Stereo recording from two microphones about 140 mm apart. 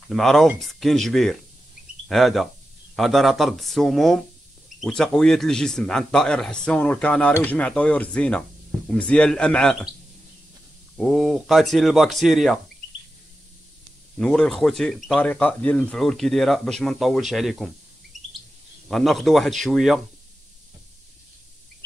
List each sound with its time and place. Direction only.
0.1 s speech: centre (ahead or behind)
11.0 s speech: centre (ahead or behind)
14.1 s speech: 5° left (ahead or behind)
18.1 s chirp: 60° right (ahead or behind)
18.9 s speech: centre (ahead or behind)